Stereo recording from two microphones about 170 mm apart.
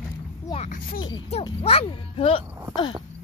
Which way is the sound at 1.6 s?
35° left (ahead or behind).